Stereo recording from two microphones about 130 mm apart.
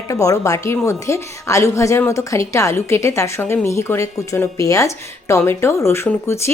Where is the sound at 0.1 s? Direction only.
25° left (ahead or behind).